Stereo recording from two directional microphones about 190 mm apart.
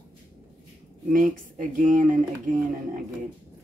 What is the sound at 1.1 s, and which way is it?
Speech, 45° right (ahead or behind).